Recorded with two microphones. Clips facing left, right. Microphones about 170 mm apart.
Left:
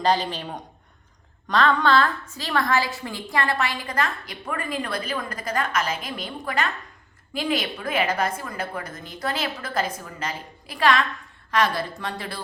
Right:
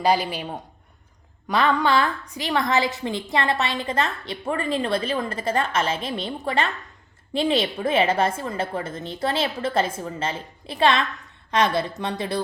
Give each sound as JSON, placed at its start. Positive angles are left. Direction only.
{"t": 0.0, "sound": "a woman's voice", "side_deg": -10}